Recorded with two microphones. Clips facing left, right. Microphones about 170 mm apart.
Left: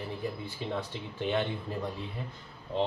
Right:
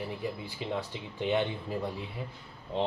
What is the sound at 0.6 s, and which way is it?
Speech, 15° right (ahead or behind).